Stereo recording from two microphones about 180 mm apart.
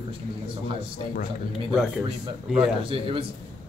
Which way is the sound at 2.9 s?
30° right (ahead or behind).